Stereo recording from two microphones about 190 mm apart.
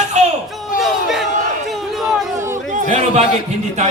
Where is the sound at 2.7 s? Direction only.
40° right (ahead or behind).